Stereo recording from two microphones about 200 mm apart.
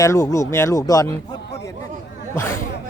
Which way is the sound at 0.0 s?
15° left (ahead or behind).